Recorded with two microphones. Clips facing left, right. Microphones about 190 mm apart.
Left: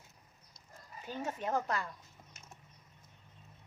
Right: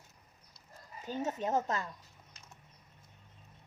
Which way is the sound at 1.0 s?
20° right (ahead or behind).